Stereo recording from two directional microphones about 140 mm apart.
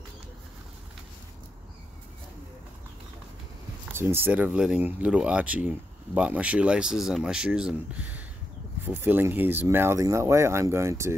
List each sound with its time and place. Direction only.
3.9 s speech: 15° right (ahead or behind)